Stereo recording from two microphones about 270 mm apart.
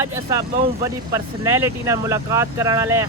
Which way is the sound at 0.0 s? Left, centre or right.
Centre.